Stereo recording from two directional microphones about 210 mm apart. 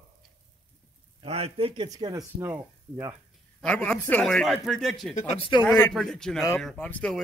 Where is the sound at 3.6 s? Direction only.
5° left (ahead or behind).